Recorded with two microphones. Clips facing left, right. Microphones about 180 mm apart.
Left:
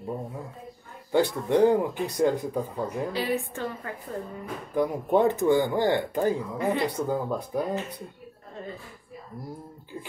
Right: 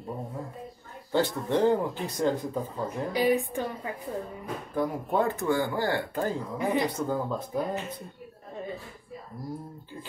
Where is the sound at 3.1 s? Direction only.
15° right (ahead or behind).